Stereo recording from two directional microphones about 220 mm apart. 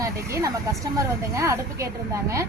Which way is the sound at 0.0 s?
15° right (ahead or behind).